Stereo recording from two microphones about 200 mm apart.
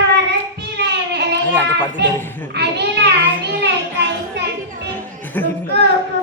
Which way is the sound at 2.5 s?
55° right (ahead or behind).